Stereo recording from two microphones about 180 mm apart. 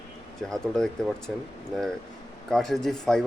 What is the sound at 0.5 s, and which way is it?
Speech, 5° left (ahead or behind).